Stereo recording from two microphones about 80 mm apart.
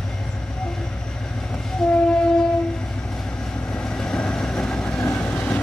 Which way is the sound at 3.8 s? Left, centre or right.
Centre.